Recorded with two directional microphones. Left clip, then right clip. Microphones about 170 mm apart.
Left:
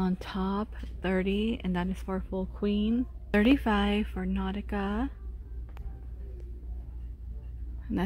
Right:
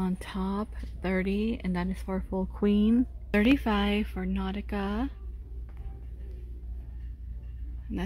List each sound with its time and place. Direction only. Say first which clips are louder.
0.0 s speech: left 1 dB; centre (ahead or behind)
2.1 s speech: right 3 dB; 20° right (ahead or behind)
3.3 s speech: left 1 dB; 5° right (ahead or behind)